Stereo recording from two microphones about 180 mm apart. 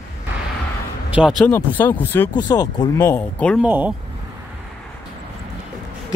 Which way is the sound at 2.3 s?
20° left (ahead or behind).